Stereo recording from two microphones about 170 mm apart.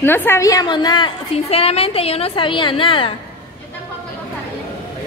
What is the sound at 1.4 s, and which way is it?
A woman's voice, 35° left (ahead or behind).